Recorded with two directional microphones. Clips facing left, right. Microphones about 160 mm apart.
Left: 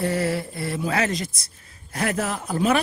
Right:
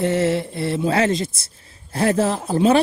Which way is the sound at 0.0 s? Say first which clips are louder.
Right 5 dB; 25° right (ahead or behind).